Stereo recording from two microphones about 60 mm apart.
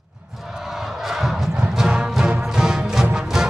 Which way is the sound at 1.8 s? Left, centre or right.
Centre.